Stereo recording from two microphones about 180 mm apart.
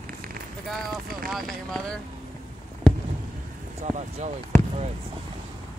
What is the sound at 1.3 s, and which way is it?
Speech, 5° left (ahead or behind).